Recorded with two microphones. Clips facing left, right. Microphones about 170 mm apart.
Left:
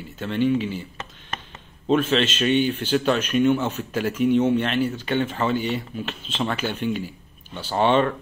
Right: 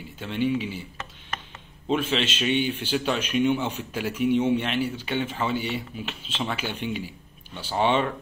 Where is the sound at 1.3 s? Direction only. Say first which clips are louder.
Left 1 dB; 25° left (ahead or behind).